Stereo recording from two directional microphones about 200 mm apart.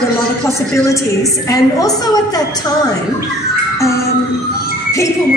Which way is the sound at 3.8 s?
15° left (ahead or behind).